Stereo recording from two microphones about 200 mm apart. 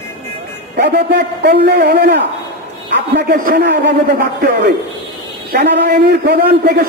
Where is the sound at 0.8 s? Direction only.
55° right (ahead or behind).